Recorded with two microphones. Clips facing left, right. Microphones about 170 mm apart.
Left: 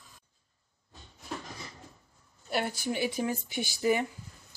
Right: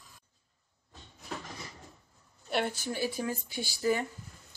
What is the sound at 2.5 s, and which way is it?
Speech, 5° left (ahead or behind).